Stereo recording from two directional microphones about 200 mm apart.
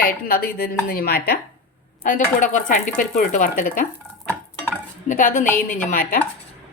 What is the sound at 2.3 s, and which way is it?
Speech, 40° left (ahead or behind).